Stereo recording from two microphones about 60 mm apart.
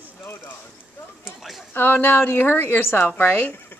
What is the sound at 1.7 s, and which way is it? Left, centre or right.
Speech, left.